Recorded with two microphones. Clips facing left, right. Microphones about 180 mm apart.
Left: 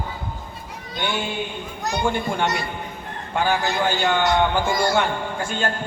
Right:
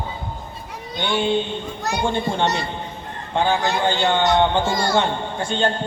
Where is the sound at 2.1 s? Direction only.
25° right (ahead or behind).